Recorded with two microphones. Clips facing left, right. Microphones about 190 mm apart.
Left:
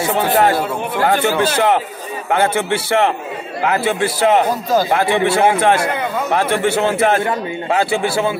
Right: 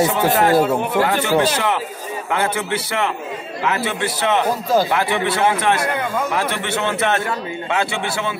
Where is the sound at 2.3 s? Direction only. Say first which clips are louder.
Left 5 dB; 30° left (ahead or behind).